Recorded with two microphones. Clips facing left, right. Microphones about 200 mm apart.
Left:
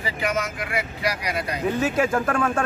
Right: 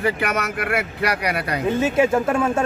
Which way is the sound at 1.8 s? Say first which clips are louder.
Right 5 dB; 25° right (ahead or behind).